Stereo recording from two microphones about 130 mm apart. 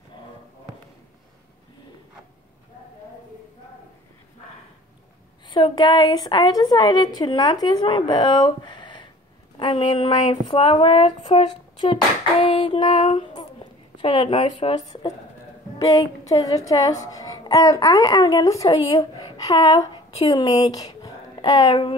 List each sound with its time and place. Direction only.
5.5 s a woman's voice: 35° left (ahead or behind)
11.3 s female singing: 45° left (ahead or behind)
15.8 s a woman's voice: 25° left (ahead or behind)